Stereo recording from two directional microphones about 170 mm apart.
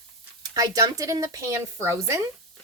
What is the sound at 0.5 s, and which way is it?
A woman's voice, 20° right (ahead or behind).